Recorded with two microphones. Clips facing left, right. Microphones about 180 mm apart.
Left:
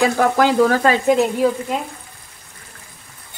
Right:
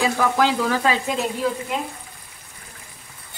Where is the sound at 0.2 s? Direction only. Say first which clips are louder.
Left 6 dB; 50° left (ahead or behind).